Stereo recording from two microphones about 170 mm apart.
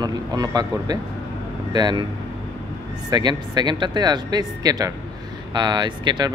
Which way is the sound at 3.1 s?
25° right (ahead or behind).